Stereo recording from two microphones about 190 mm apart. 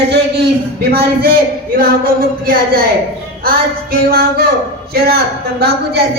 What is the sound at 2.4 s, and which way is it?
Speech, 50° right (ahead or behind).